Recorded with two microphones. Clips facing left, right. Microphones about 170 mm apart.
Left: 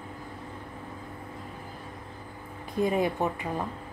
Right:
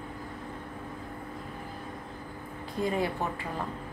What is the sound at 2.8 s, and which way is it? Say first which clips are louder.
Speech: left 4 dB; 20° left (ahead or behind).